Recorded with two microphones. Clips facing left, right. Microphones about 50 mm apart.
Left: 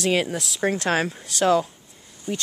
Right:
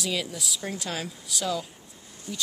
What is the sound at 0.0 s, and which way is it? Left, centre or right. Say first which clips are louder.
Speech: left 8 dB; left.